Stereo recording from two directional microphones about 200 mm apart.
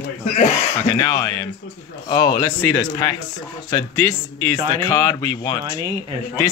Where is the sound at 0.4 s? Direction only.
20° left (ahead or behind).